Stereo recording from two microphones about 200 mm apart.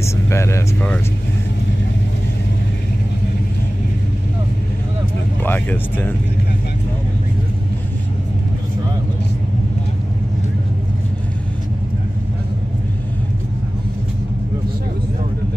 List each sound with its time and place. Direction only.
0.0 s speech: 15° left (ahead or behind)
5.4 s speech: 10° left (ahead or behind)